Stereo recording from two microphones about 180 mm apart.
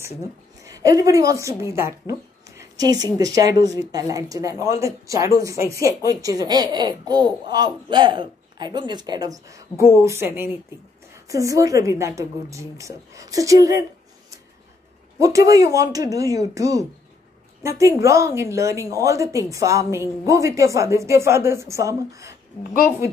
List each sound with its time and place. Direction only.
0.7 s a woman's voice: 20° right (ahead or behind)
15.1 s a woman's voice: 20° right (ahead or behind)